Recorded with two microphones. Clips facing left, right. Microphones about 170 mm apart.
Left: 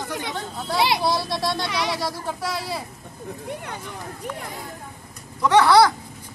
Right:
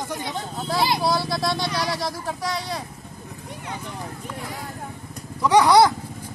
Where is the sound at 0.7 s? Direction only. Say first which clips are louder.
Left 1 dB; 85° left.